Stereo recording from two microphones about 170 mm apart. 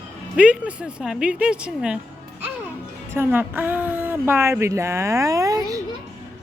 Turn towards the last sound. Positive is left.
turn(degrees=-20)  # may be behind; listen again after turning